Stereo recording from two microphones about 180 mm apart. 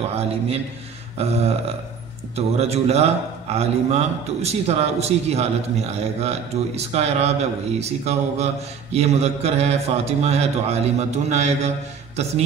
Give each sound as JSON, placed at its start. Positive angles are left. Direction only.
{"t": 0.1, "sound": "a man's voice", "side_deg": -35}